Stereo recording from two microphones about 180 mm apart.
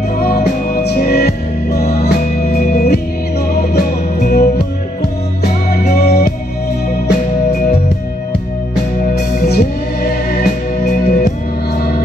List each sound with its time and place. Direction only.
0.2 s music: 55° left (ahead or behind)
9.0 s music: 60° left (ahead or behind)